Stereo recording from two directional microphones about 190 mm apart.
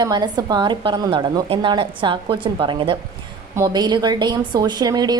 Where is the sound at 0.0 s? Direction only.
20° right (ahead or behind).